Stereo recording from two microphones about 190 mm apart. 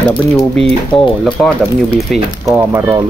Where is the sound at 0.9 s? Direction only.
Centre (ahead or behind).